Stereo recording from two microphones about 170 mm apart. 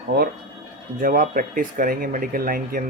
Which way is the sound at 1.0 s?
55° right (ahead or behind).